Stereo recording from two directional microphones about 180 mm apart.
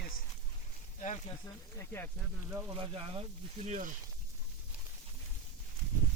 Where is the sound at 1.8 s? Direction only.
15° left (ahead or behind).